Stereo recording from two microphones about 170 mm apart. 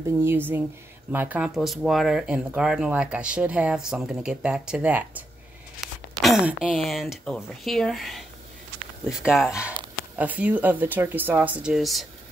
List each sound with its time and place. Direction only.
0.2 s speech: 15° right (ahead or behind)